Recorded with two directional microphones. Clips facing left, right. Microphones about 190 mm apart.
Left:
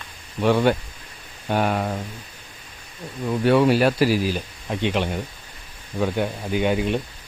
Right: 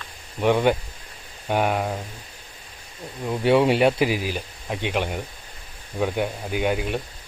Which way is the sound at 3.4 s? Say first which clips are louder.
Even; 25° right (ahead or behind).